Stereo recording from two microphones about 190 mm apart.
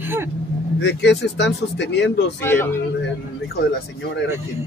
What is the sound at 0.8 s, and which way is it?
Speech, 65° left (ahead or behind).